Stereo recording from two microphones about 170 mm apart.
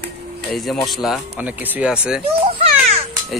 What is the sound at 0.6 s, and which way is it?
Speech, centre (ahead or behind).